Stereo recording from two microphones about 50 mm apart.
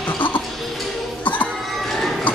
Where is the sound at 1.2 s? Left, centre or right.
Left.